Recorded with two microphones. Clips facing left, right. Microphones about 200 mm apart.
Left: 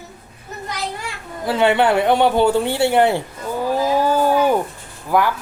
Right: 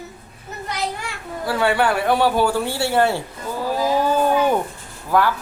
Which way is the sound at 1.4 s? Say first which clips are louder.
Left 3 dB; 20° left (ahead or behind).